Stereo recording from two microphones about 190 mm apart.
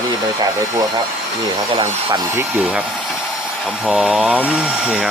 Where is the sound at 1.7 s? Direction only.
20° right (ahead or behind).